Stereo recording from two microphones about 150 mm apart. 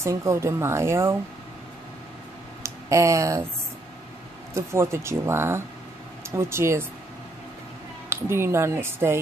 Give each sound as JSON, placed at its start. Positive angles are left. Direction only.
{"t": 0.0, "sound": "speech", "side_deg": -20}
{"t": 2.6, "sound": "speech", "side_deg": -20}
{"t": 4.6, "sound": "speech", "side_deg": -20}
{"t": 8.1, "sound": "speech", "side_deg": -15}